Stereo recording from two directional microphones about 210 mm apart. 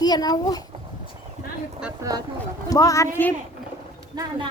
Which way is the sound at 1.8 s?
15° right (ahead or behind).